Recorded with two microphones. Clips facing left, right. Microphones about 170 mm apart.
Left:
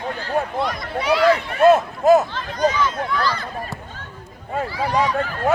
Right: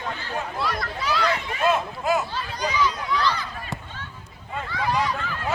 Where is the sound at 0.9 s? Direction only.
55° left (ahead or behind).